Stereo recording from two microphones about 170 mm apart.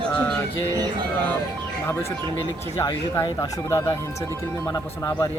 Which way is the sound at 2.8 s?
20° left (ahead or behind).